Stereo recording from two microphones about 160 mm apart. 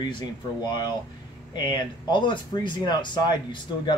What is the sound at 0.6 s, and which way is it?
Speech, 30° left (ahead or behind).